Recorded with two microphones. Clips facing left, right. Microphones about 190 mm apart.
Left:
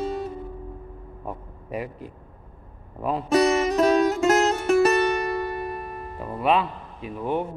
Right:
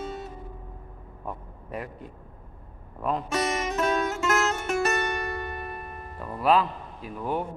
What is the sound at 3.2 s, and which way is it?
Music, 35° left (ahead or behind).